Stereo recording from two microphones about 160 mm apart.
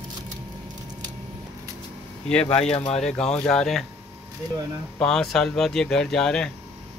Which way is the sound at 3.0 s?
5° left (ahead or behind).